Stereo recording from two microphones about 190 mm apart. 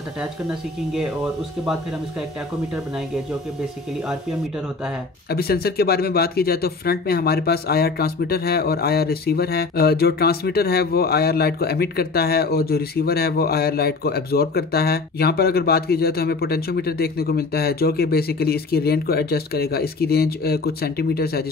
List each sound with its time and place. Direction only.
5.3 s speech: 55° left (ahead or behind)